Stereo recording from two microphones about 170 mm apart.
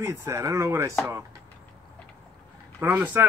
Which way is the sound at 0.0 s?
15° right (ahead or behind).